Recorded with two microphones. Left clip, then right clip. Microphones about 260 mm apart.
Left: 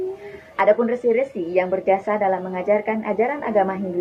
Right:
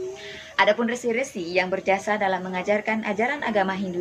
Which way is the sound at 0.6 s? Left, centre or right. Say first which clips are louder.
Left 4 dB; right.